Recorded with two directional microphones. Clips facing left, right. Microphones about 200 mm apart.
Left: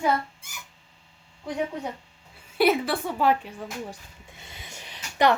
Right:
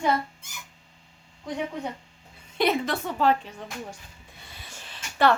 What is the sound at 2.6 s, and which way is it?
Speech, 10° left (ahead or behind).